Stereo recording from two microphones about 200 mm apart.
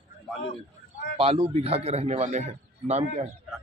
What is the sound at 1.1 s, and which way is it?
A man's voice, 30° right (ahead or behind).